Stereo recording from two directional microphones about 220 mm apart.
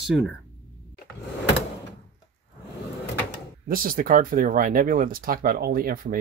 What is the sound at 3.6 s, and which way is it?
Speech, 40° right (ahead or behind).